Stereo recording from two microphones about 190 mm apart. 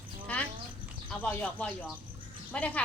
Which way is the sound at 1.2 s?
5° left (ahead or behind).